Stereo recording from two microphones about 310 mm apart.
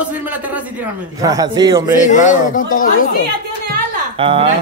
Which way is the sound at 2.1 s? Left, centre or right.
Left.